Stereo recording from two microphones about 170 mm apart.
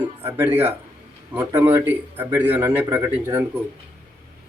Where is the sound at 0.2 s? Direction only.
10° right (ahead or behind).